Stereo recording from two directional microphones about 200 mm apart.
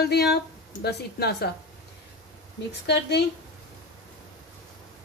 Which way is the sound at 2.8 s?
55° left (ahead or behind).